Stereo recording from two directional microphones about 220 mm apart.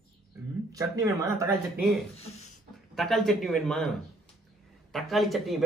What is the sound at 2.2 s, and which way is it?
Speech, 30° left (ahead or behind).